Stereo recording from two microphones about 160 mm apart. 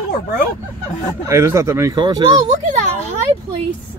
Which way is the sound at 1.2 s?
15° right (ahead or behind).